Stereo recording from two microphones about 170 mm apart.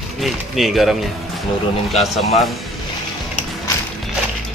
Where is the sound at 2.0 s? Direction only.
40° left (ahead or behind).